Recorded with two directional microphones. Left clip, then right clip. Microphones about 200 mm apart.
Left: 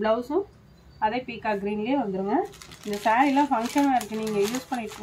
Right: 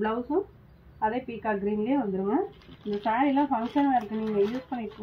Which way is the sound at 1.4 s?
15° left (ahead or behind).